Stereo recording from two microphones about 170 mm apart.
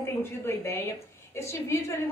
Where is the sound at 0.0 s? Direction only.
15° left (ahead or behind).